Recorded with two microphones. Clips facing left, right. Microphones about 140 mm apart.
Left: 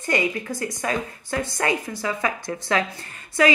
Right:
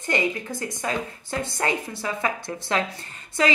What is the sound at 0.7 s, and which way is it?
A woman's voice, 20° right (ahead or behind).